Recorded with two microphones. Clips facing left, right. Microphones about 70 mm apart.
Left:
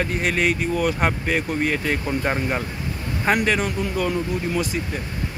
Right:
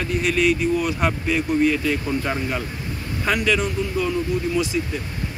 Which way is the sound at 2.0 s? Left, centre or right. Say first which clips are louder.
Left 1 dB; left.